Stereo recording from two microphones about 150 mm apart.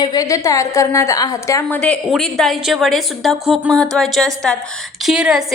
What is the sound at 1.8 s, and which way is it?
A woman's voice, 5° left (ahead or behind).